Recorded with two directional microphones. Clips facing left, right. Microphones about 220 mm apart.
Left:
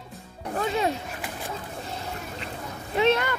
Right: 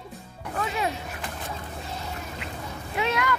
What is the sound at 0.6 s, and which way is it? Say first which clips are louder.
Music: left 3 dB; 30° left (ahead or behind).